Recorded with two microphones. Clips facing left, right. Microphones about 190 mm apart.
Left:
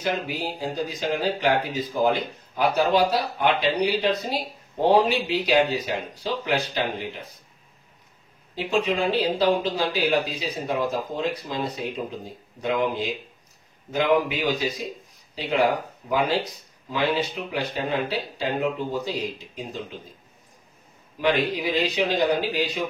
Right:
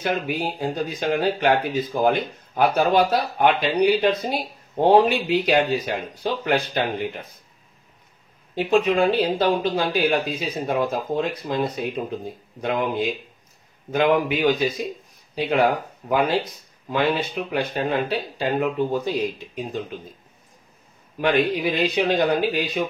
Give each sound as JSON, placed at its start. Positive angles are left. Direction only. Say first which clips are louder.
{"t": 0.0, "sound": "speech", "louder": "right 3 dB", "side_deg": -55}
{"t": 8.5, "sound": "speech", "louder": "right 5 dB", "side_deg": -55}
{"t": 21.2, "sound": "speech", "louder": "right 3 dB", "side_deg": -55}